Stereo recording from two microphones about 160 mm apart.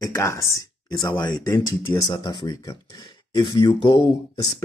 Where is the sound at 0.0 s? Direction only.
20° left (ahead or behind).